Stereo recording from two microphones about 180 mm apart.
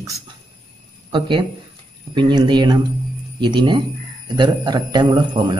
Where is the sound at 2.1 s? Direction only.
25° right (ahead or behind).